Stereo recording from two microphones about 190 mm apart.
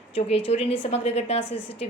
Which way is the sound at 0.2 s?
30° left (ahead or behind).